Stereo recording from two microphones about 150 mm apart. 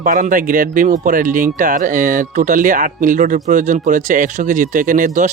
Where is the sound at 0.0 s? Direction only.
60° right (ahead or behind).